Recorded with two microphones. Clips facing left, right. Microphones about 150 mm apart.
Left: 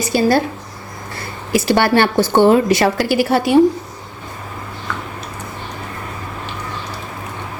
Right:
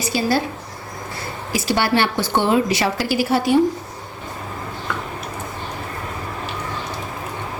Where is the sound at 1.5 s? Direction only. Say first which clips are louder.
Left 5 dB; 60° left (ahead or behind).